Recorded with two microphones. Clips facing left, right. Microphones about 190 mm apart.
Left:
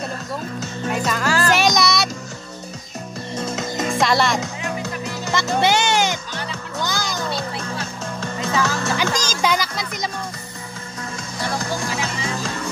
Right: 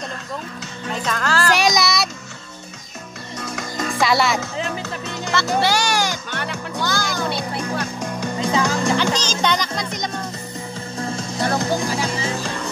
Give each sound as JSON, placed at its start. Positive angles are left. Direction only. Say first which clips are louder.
{"t": 0.9, "sound": "speech", "louder": "left 1 dB", "side_deg": 10}
{"t": 1.5, "sound": "a sound", "louder": "even", "side_deg": 0}
{"t": 3.3, "sound": "music", "louder": "left 3 dB", "side_deg": 25}
{"t": 4.0, "sound": "speech", "louder": "right 1 dB", "side_deg": 0}
{"t": 5.2, "sound": "music", "louder": "even", "side_deg": 15}
{"t": 6.3, "sound": "music", "louder": "right 2 dB", "side_deg": -60}
{"t": 6.8, "sound": "music", "louder": "right 2 dB", "side_deg": 20}
{"t": 7.2, "sound": "music", "louder": "right 2 dB", "side_deg": -60}
{"t": 8.0, "sound": "music", "louder": "right 3 dB", "side_deg": -15}
{"t": 8.9, "sound": "music", "louder": "right 2 dB", "side_deg": 10}
{"t": 11.0, "sound": "music", "louder": "right 6 dB", "side_deg": -30}
{"t": 11.5, "sound": "music", "louder": "right 4 dB", "side_deg": -20}
{"t": 11.9, "sound": "music", "louder": "right 3 dB", "side_deg": -35}